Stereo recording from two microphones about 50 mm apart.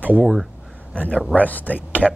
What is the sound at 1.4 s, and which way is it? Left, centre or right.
Speech, left.